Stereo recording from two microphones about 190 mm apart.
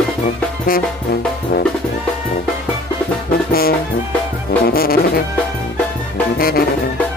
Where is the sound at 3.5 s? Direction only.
50° left (ahead or behind).